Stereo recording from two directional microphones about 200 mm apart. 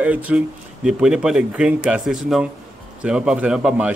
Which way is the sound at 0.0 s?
5° right (ahead or behind).